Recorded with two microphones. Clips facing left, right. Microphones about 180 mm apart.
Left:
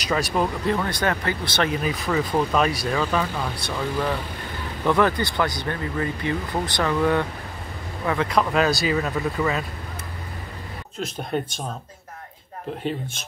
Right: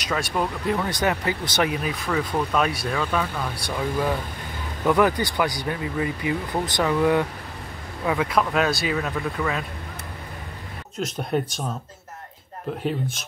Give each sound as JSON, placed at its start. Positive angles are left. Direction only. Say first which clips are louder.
{"t": 0.0, "sound": "speech", "louder": "left 2 dB", "side_deg": 0}
{"t": 0.7, "sound": "speech", "louder": "even", "side_deg": -10}
{"t": 1.8, "sound": "speech", "louder": "left 2 dB", "side_deg": 0}
{"t": 3.5, "sound": "speech", "louder": "even", "side_deg": -10}
{"t": 11.3, "sound": "speech", "louder": "right 2 dB", "side_deg": -5}